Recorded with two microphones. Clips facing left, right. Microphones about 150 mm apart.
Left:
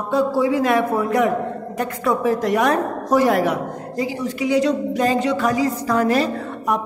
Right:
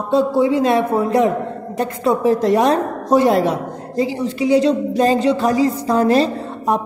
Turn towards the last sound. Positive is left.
turn(degrees=-30)  # may be behind; listen again after turning